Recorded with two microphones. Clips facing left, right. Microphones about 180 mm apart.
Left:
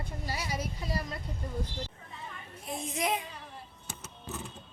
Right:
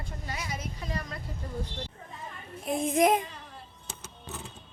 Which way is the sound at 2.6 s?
55° right (ahead or behind).